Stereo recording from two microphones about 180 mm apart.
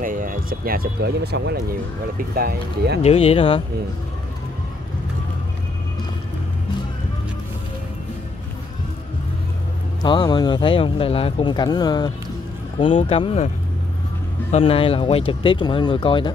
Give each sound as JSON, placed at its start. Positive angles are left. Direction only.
{"t": 0.0, "sound": "speech", "side_deg": -50}
{"t": 3.0, "sound": "speech", "side_deg": 35}
{"t": 10.0, "sound": "speech", "side_deg": 25}
{"t": 14.5, "sound": "speech", "side_deg": 30}